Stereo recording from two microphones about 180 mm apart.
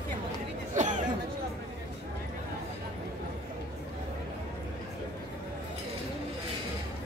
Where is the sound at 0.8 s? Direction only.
45° right (ahead or behind).